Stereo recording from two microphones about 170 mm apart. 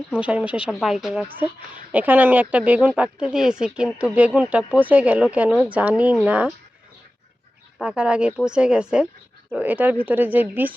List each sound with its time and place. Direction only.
0.2 s speech: 5° right (ahead or behind)
7.8 s speech: 5° right (ahead or behind)